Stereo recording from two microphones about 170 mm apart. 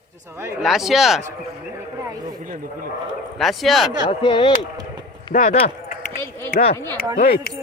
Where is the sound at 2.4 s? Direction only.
55° right (ahead or behind).